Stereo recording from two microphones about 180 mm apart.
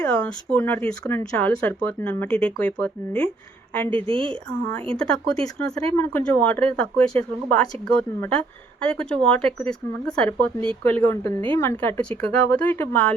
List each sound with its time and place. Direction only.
0.0 s speech: 5° left (ahead or behind)
4.0 s a woman's voice: 30° right (ahead or behind)
5.4 s speech: 5° left (ahead or behind)